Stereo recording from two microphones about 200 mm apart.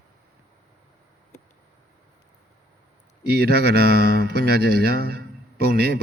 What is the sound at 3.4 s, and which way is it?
Speech, 50° right (ahead or behind).